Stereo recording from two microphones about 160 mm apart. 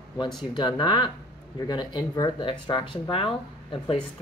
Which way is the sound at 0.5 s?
30° left (ahead or behind).